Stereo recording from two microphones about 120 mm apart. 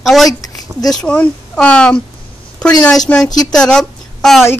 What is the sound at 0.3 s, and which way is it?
Speech, 30° left (ahead or behind).